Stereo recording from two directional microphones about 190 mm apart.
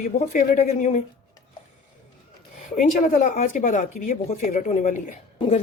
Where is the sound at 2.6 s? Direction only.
40° left (ahead or behind).